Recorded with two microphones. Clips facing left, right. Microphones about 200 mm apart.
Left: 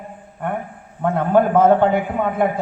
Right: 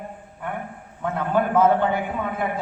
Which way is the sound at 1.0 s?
50° left (ahead or behind).